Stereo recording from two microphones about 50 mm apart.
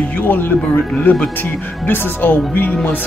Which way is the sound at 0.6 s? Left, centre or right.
Left.